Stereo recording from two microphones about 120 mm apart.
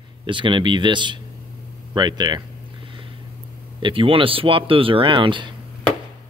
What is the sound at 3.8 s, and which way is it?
Speech, 45° right (ahead or behind).